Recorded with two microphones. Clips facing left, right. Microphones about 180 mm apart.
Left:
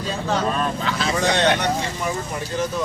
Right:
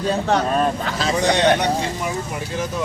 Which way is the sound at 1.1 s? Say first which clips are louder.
Right 3 dB; 15° right (ahead or behind).